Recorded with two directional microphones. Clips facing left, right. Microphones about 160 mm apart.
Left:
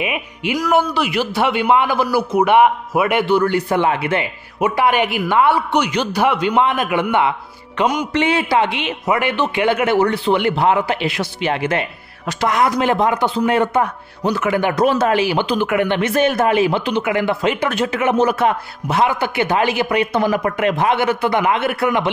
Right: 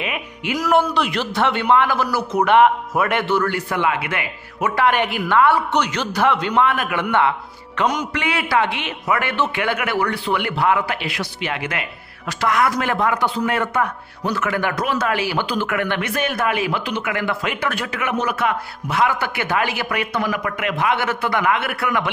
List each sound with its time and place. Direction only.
0.0 s music: 15° left (ahead or behind)
0.6 s a man's voice: 5° left (ahead or behind)
8.1 s speech: 25° left (ahead or behind)
21.0 s speech: 20° left (ahead or behind)